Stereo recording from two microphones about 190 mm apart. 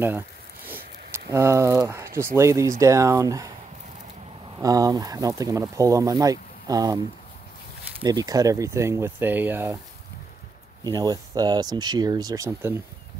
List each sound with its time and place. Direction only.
0.7 s speech: 10° right (ahead or behind)
4.6 s speech: 20° right (ahead or behind)
10.8 s speech: 20° right (ahead or behind)